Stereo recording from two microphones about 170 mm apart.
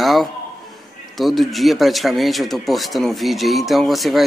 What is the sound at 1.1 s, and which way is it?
Speech, centre (ahead or behind).